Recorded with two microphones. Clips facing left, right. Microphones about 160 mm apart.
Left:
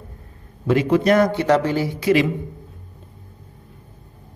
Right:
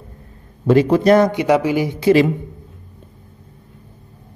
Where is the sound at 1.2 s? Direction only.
15° right (ahead or behind).